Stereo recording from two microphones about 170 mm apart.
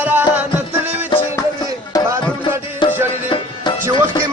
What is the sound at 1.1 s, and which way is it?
Music, 30° left (ahead or behind).